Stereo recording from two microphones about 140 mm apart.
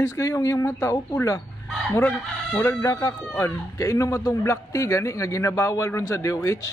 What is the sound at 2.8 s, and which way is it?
Speech, 25° left (ahead or behind).